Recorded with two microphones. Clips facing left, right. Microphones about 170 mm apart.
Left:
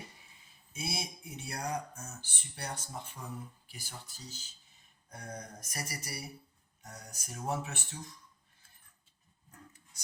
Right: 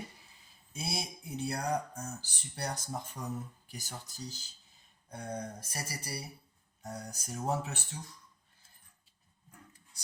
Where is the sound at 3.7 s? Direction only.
45° right (ahead or behind).